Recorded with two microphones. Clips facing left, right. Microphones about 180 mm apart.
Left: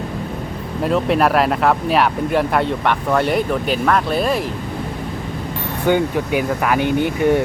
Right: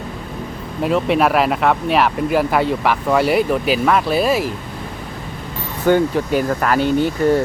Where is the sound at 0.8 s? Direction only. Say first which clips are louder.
Even; centre (ahead or behind).